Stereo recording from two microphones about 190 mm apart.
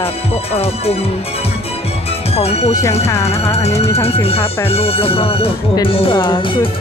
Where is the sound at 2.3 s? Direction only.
35° left (ahead or behind).